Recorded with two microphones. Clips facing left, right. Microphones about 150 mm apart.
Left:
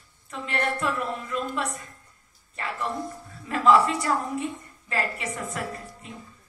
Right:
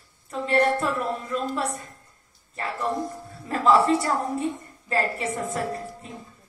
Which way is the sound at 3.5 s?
40° right (ahead or behind).